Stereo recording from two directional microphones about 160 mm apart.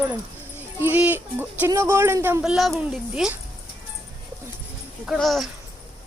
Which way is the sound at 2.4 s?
Centre (ahead or behind).